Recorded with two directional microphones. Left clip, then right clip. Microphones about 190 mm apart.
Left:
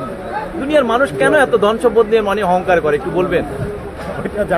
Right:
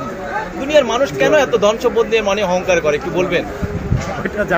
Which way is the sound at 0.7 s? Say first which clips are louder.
Even; 50° left (ahead or behind).